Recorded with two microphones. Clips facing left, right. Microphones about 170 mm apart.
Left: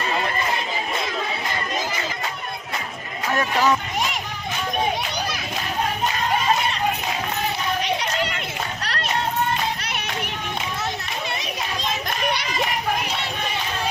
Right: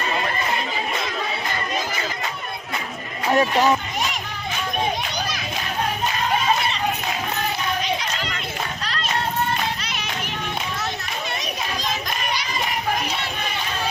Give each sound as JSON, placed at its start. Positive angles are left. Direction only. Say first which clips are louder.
{"t": 3.2, "sound": "speech", "louder": "right 3 dB", "side_deg": -20}
{"t": 8.8, "sound": "a sound", "louder": "left 1 dB", "side_deg": 65}
{"t": 9.8, "sound": "music", "louder": "left 1 dB", "side_deg": 60}